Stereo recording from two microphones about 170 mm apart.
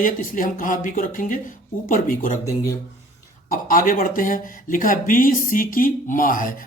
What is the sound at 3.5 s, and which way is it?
Speech, 55° left (ahead or behind).